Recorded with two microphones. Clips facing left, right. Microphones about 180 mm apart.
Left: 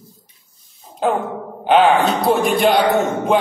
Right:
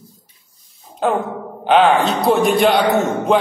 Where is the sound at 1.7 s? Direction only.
Centre (ahead or behind).